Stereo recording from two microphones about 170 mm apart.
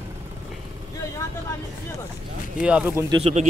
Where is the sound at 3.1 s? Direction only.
40° right (ahead or behind).